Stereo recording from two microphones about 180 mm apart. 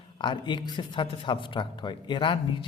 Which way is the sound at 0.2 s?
25° left (ahead or behind).